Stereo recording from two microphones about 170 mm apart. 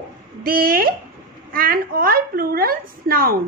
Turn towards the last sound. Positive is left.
turn(degrees=-60)  # may be behind; listen again after turning